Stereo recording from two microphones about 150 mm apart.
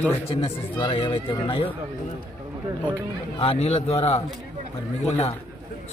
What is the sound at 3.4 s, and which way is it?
A man's voice, 40° left (ahead or behind).